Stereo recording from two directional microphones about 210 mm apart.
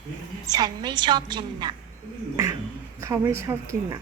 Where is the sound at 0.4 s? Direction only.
20° right (ahead or behind).